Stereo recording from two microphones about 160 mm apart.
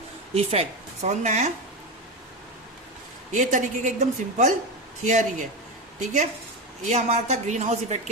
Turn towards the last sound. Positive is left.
turn(degrees=-45)  # may be behind; listen again after turning